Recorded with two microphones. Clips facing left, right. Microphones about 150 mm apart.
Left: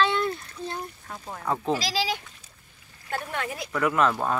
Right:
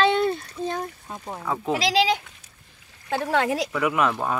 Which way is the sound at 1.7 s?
80° right.